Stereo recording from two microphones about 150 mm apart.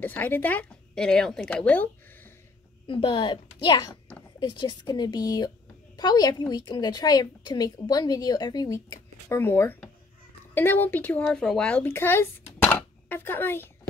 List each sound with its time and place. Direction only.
0.0 s a woman's voice: 10° left (ahead or behind)
2.9 s a woman's voice: 35° left (ahead or behind); by 13.7 s 15° left (ahead or behind)